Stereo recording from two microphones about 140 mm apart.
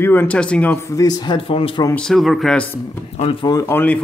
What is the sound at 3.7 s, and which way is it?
Speech, 10° left (ahead or behind).